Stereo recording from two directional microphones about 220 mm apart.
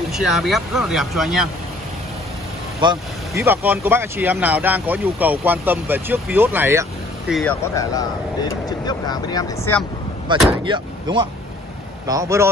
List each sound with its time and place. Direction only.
0.1 s speech: centre (ahead or behind)
2.8 s speech: 15° right (ahead or behind)
7.3 s speech: 10° left (ahead or behind)
10.2 s speech: 20° right (ahead or behind)